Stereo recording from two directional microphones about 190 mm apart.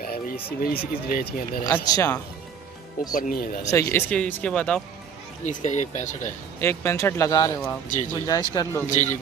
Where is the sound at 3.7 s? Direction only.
15° left (ahead or behind).